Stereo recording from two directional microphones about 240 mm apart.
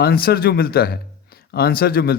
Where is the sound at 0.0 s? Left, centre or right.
Left.